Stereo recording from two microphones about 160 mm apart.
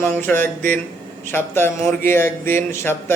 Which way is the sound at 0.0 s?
15° left (ahead or behind).